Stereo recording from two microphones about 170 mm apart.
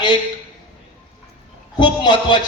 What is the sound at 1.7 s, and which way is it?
Speech, 25° left (ahead or behind).